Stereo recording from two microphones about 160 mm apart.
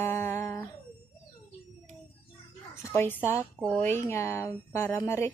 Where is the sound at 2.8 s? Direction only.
15° left (ahead or behind).